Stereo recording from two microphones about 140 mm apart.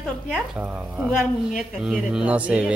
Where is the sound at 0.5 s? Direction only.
10° right (ahead or behind).